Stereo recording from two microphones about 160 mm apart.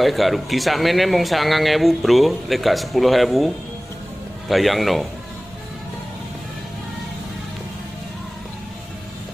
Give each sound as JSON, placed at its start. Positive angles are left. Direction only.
{"t": 0.0, "sound": "speech", "side_deg": 0}